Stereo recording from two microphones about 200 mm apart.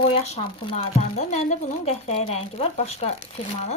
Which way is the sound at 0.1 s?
30° left (ahead or behind).